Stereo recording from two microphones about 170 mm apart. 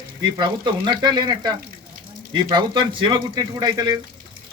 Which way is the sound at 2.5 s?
25° right (ahead or behind).